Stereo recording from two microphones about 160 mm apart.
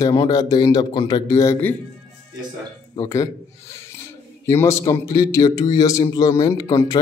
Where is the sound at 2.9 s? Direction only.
25° left (ahead or behind).